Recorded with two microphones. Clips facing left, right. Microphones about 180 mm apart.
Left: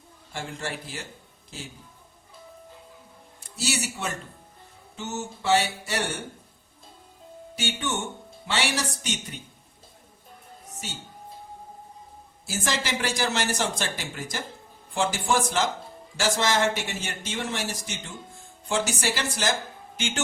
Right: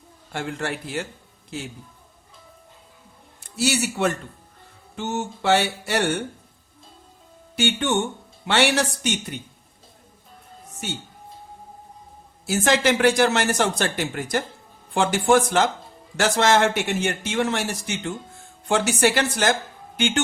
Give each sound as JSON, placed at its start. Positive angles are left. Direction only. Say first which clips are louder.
{"t": 0.3, "sound": "speech", "louder": "right 6 dB", "side_deg": -65}
{"t": 3.4, "sound": "a man's voice", "louder": "right 7 dB", "side_deg": -60}
{"t": 7.5, "sound": "speech", "louder": "right 8 dB", "side_deg": -65}
{"t": 12.5, "sound": "speech", "louder": "right 9 dB", "side_deg": -65}